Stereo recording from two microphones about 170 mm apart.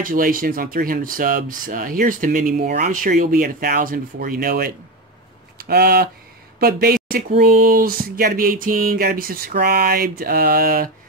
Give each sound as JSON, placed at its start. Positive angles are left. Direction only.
{"t": 0.0, "sound": "speech", "side_deg": -55}